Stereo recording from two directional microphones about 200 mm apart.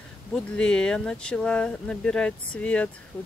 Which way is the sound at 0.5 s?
5° left (ahead or behind).